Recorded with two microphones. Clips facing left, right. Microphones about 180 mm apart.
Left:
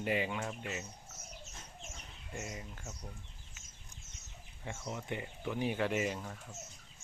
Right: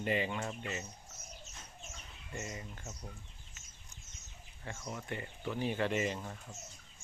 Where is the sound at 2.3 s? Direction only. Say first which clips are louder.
Even; centre (ahead or behind).